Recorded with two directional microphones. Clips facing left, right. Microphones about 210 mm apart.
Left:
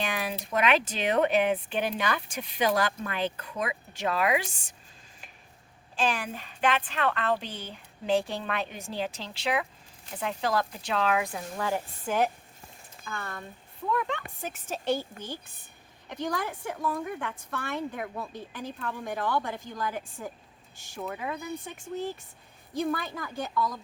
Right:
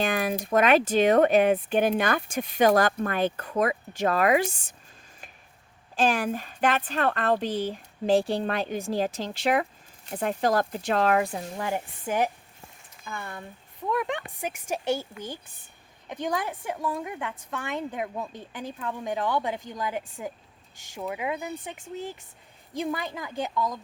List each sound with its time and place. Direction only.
0.0 s speech: 45° right (ahead or behind)
6.0 s a woman's voice: 45° right (ahead or behind)
11.3 s a woman's voice: 20° right (ahead or behind)
16.0 s a woman's voice: 20° right (ahead or behind)
22.8 s a woman's voice: 20° right (ahead or behind)